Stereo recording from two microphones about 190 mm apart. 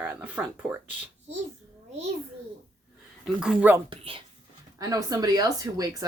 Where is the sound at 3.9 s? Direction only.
30° right (ahead or behind).